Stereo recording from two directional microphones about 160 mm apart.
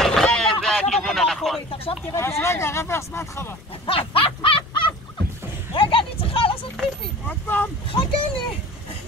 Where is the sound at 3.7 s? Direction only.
35° left (ahead or behind).